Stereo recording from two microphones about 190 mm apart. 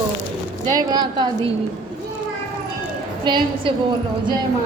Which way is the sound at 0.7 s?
20° right (ahead or behind).